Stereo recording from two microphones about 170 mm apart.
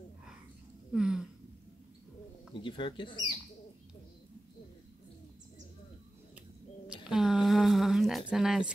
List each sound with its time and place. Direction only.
0.9 s speech: 5° right (ahead or behind)
2.5 s speech: 30° left (ahead or behind)
6.9 s a sound: 5° right (ahead or behind)